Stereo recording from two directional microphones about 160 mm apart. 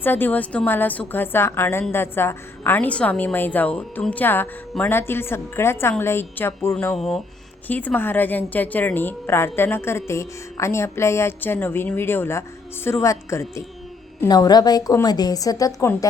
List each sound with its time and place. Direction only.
0.0 s a woman's voice: 10° left (ahead or behind)
6.9 s a woman's voice: centre (ahead or behind); by 16.0 s 20° left (ahead or behind)